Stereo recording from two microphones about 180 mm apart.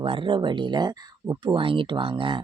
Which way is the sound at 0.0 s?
30° right (ahead or behind).